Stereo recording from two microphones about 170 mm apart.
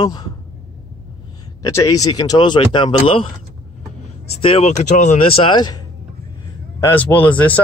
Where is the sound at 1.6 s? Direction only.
20° left (ahead or behind).